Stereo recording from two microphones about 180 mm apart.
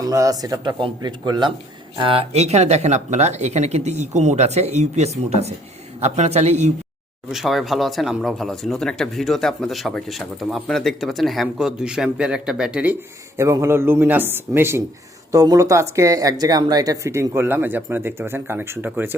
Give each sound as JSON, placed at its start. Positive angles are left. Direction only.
{"t": 0.0, "sound": "speech", "side_deg": -20}
{"t": 7.3, "sound": "speech", "side_deg": 0}